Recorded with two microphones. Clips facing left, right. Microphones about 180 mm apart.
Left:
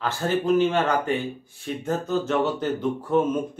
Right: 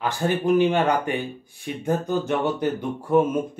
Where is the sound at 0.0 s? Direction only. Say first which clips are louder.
Right 1 dB; 15° right (ahead or behind).